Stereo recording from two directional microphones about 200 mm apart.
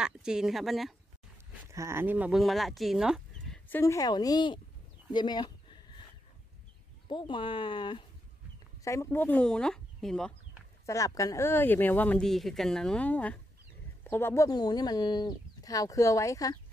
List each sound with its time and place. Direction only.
0.0 s speech: 5° right (ahead or behind)
1.7 s speech: 15° right (ahead or behind); by 4.6 s 20° left (ahead or behind)
5.1 s a sound: 20° left (ahead or behind)
7.1 s speech: 25° left (ahead or behind); by 10.3 s centre (ahead or behind)
10.9 s speech: 15° left (ahead or behind)